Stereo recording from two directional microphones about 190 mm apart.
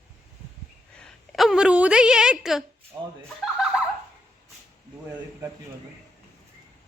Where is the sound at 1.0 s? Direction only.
Centre (ahead or behind).